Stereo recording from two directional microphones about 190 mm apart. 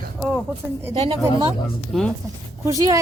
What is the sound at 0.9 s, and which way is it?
Speech, 30° right (ahead or behind).